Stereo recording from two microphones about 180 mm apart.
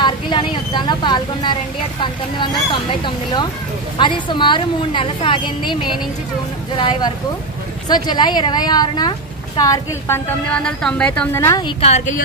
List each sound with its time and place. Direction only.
0.0 s a woman's voice: 25° left (ahead or behind)
4.0 s a woman's voice: 25° left (ahead or behind)
11.6 s a woman's voice: 35° left (ahead or behind)